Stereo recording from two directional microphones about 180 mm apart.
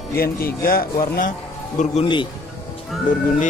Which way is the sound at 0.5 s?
55° left (ahead or behind).